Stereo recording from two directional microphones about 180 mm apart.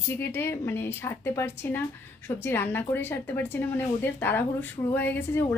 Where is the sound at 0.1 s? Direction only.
10° left (ahead or behind).